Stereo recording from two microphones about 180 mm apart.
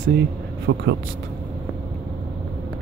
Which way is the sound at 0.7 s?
90° right.